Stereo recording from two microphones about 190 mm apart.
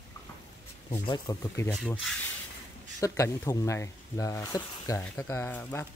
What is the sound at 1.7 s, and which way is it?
Speech, centre (ahead or behind).